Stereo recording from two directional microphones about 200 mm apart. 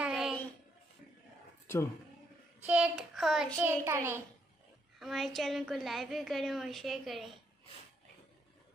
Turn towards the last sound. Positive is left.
turn(degrees=0)  # may be behind; listen again after turning